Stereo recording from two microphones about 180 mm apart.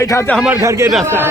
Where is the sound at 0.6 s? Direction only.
15° right (ahead or behind).